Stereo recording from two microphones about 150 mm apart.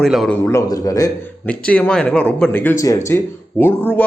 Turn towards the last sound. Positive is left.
turn(degrees=10)  # may be behind; listen again after turning